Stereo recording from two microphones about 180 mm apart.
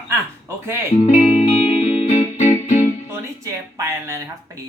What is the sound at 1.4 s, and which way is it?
Music, 35° left (ahead or behind).